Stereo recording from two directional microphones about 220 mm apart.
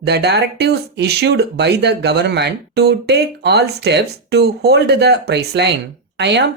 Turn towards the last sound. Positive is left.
turn(degrees=-50)  # may be behind; listen again after turning